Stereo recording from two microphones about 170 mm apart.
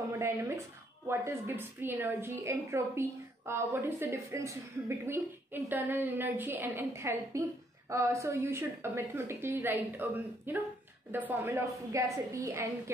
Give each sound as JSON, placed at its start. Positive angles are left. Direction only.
{"t": 1.0, "sound": "a woman's voice", "side_deg": -15}